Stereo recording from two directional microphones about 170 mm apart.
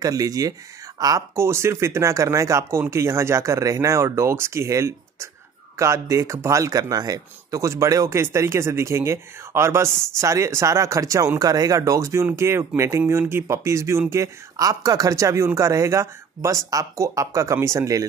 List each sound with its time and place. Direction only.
0.0 s speech: 20° right (ahead or behind)